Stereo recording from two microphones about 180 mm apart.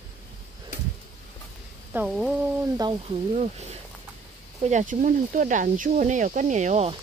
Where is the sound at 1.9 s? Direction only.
5° right (ahead or behind).